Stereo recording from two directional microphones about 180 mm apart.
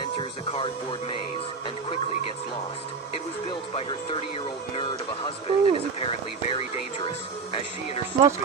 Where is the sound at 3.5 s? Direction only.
30° left (ahead or behind).